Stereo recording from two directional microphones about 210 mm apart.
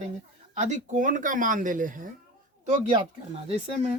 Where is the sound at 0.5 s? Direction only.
35° right (ahead or behind).